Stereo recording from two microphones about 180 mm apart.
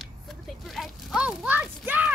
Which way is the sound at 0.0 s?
Centre (ahead or behind).